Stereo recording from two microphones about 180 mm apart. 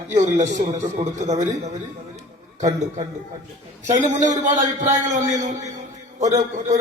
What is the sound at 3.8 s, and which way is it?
A man's voice, 40° right (ahead or behind).